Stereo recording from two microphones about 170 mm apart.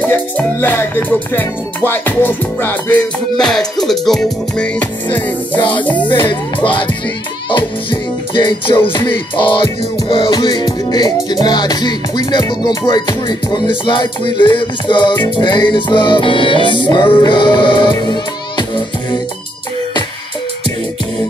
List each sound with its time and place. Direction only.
0.0 s music: 10° left (ahead or behind)
5.9 s music: 30° left (ahead or behind)